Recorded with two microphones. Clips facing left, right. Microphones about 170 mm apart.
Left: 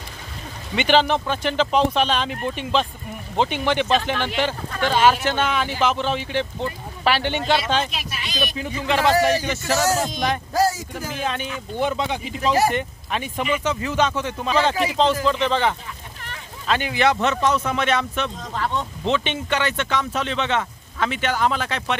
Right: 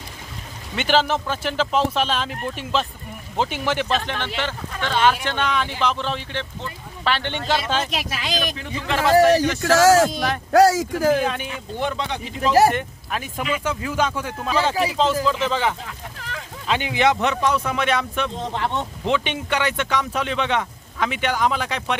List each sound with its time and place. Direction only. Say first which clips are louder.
0.7 s speech: left 2 dB; 5° right (ahead or behind)
7.9 s speech: right 5 dB; 90° right
8.5 s speech: left 2 dB; centre (ahead or behind)
9.6 s speech: right 7 dB; 90° right
10.1 s speech: left 1 dB; 5° right (ahead or behind)
10.5 s speech: right 10 dB; 85° right
11.8 s speech: left 3 dB; 5° left (ahead or behind)
16.2 s a sound: right 4 dB; 90° right
16.6 s speech: even; 15° right (ahead or behind)
18.3 s speech: right 1 dB; 25° right (ahead or behind)
19.0 s speech: even; 10° right (ahead or behind)